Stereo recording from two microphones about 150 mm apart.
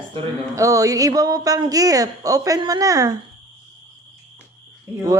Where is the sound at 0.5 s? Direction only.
20° right (ahead or behind).